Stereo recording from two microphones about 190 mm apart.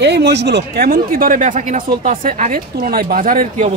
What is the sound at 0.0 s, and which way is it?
Speech, 65° right (ahead or behind).